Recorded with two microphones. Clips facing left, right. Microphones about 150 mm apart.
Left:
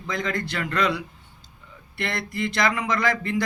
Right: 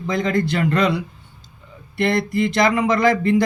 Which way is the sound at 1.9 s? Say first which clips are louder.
Right 10 dB; 20° right (ahead or behind).